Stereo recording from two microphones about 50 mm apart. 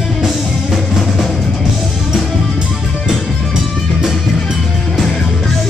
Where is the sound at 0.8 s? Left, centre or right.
Centre.